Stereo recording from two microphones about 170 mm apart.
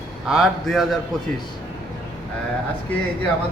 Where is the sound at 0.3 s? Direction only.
Centre (ahead or behind).